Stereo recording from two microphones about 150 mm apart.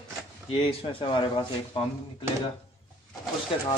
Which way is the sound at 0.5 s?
35° left (ahead or behind).